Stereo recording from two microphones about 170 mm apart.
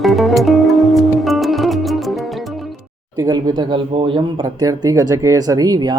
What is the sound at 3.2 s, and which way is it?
Speech, 25° right (ahead or behind).